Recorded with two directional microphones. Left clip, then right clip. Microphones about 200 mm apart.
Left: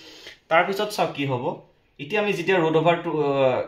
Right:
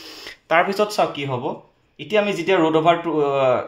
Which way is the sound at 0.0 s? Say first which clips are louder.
Right 6 dB; 60° right (ahead or behind).